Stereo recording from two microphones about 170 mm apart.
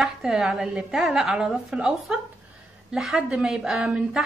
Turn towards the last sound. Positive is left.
turn(degrees=-5)  # may be behind; listen again after turning